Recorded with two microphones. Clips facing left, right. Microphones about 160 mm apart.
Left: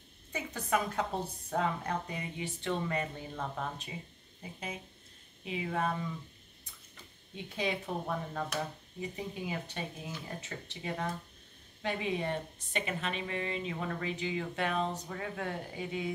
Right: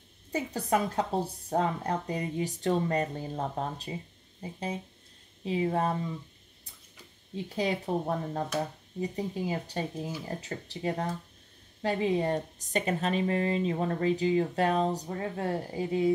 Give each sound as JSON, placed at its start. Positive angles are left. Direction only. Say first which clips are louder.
{"t": 0.3, "sound": "a woman's voice", "louder": "right 5 dB", "side_deg": -35}
{"t": 7.4, "sound": "a woman's voice", "louder": "right 5 dB", "side_deg": -35}